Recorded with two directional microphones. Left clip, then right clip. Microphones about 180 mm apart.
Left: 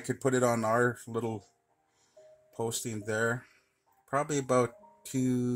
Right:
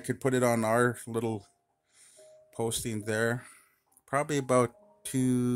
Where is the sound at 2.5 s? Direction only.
45° right (ahead or behind).